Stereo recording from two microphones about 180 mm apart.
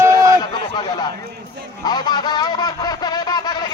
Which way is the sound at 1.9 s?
20° left (ahead or behind).